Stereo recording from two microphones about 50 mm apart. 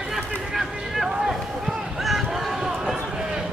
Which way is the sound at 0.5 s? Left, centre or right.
Centre.